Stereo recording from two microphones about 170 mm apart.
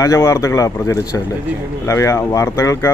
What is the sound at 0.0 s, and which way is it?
Speech, 15° left (ahead or behind).